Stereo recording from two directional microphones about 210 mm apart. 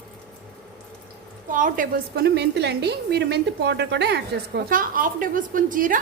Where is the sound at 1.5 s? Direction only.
40° right (ahead or behind).